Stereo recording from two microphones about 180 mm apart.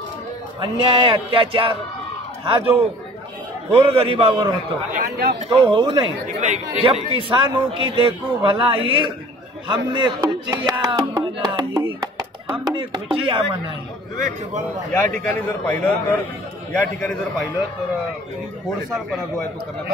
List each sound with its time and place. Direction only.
0.8 s speech: 30° right (ahead or behind)
2.4 s music: 30° right (ahead or behind)
5.0 s speech: 60° right (ahead or behind)
5.6 s music: 30° right (ahead or behind)
6.2 s speech: 40° right (ahead or behind)
7.2 s music: 25° right (ahead or behind)
15.1 s a man's voice: 5° left (ahead or behind)